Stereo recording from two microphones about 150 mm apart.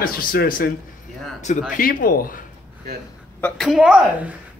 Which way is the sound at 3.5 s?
Centre (ahead or behind).